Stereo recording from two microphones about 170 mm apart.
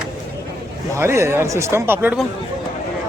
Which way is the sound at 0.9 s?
15° right (ahead or behind).